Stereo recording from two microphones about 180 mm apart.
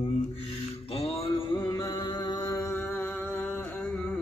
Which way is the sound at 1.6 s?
20° left (ahead or behind).